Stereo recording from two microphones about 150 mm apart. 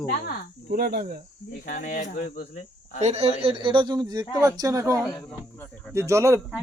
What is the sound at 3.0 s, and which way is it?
A man's voice, 45° right (ahead or behind).